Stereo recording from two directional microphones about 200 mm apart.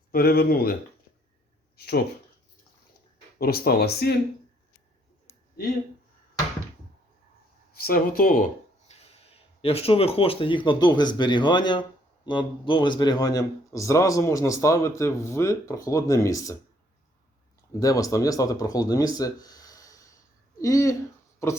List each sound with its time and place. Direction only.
0.1 s speech: 50° left (ahead or behind)
3.3 s speech: 50° left (ahead or behind)
7.8 s speech: 50° left (ahead or behind)
8.9 s speech: 30° left (ahead or behind)
17.7 s speech: 15° left (ahead or behind)